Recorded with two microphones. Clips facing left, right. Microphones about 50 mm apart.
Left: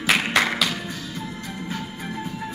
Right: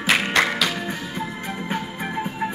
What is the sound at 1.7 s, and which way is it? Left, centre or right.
Music, right.